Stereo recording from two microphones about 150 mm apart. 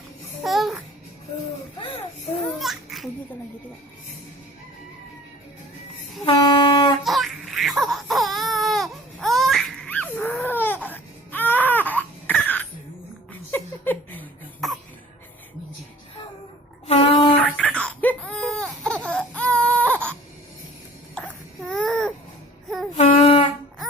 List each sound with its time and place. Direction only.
0.4 s babbling: centre (ahead or behind)
2.5 s babbling: centre (ahead or behind)
6.2 s train: 35° left (ahead or behind)
7.0 s baby cry: centre (ahead or behind)
13.5 s a sound: 10° left (ahead or behind)
14.6 s cough: centre (ahead or behind)
16.8 s a sound: 40° left (ahead or behind)
17.3 s a sound: 10° left (ahead or behind)
21.6 s babbling: 5° left (ahead or behind)
23.0 s child singing: 45° left (ahead or behind)